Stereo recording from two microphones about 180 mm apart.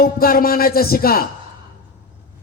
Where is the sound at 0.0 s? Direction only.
55° left (ahead or behind).